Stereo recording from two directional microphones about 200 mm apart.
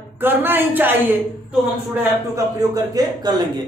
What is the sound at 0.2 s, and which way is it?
Speech, 10° right (ahead or behind).